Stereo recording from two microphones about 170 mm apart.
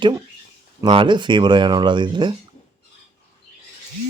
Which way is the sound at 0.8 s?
30° right (ahead or behind).